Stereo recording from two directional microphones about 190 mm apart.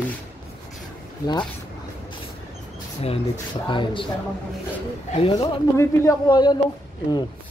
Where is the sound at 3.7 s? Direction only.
25° left (ahead or behind).